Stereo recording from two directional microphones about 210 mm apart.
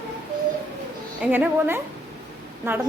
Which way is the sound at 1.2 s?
10° right (ahead or behind).